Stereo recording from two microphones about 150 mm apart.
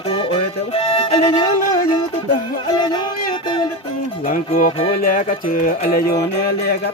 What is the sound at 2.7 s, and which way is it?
Speech, 30° left (ahead or behind).